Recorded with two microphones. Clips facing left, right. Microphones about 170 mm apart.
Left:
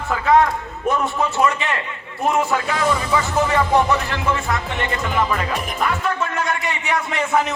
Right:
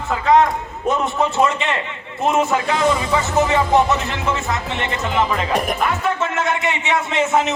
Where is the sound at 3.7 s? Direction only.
20° right (ahead or behind).